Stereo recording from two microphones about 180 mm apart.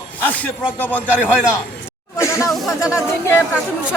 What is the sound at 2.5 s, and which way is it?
Speech, centre (ahead or behind).